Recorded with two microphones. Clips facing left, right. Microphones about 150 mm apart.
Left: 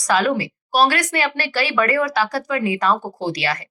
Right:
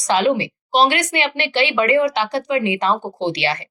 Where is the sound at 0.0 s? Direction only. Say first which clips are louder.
Right 2 dB; 25° right (ahead or behind).